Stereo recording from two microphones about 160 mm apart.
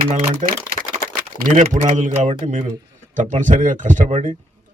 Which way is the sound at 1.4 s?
50° right (ahead or behind).